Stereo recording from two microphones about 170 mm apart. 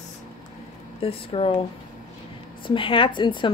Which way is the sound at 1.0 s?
35° left (ahead or behind).